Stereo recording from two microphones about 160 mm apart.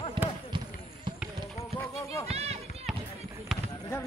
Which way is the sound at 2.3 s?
40° right (ahead or behind).